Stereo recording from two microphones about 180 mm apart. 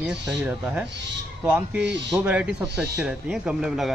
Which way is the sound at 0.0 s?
5° right (ahead or behind).